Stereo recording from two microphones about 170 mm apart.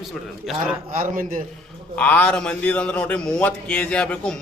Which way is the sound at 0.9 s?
50° right (ahead or behind).